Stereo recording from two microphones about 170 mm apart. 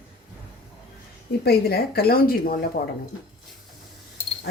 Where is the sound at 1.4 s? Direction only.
65° left (ahead or behind).